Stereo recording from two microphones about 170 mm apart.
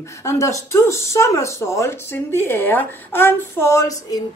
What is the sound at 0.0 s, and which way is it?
Speech, 15° left (ahead or behind).